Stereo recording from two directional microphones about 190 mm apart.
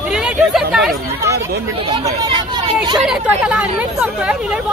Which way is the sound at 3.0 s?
5° right (ahead or behind).